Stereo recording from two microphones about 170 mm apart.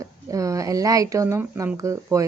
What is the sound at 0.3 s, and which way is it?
Speech, 20° right (ahead or behind).